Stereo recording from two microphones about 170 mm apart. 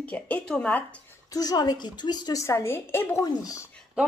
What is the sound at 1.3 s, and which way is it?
A woman's voice, 20° left (ahead or behind).